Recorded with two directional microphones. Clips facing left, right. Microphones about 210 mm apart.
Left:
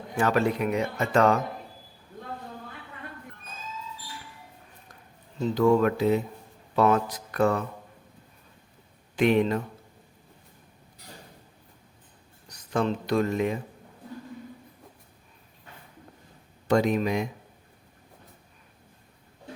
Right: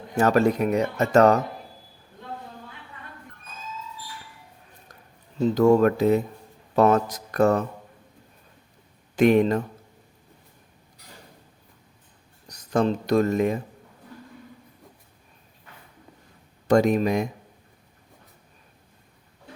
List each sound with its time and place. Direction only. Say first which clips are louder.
0.2 s speech: right 4 dB; 40° right (ahead or behind)
5.4 s speech: right 4 dB; 40° right (ahead or behind)
9.1 s speech: right 4 dB; 45° right (ahead or behind)
12.5 s speech: right 4 dB; 40° right (ahead or behind)
16.6 s speech: right 4 dB; 45° right (ahead or behind)